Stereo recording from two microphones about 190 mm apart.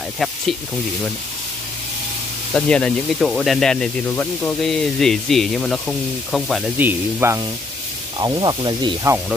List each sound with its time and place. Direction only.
2.5 s speech: 5° left (ahead or behind)
6.8 s speech: 10° right (ahead or behind)